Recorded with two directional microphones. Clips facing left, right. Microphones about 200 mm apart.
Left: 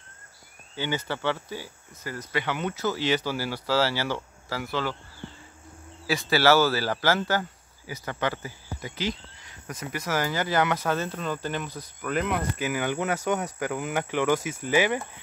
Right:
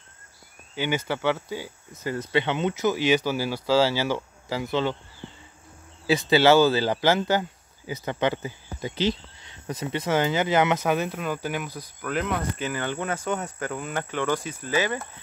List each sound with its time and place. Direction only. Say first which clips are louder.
0.7 s speech: right 3 dB; 15° right (ahead or behind)
6.0 s speech: right 3 dB; 20° right (ahead or behind)
12.0 s speech: even; centre (ahead or behind)